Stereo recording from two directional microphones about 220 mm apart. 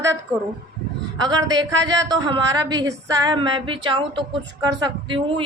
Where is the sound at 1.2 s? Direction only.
15° right (ahead or behind).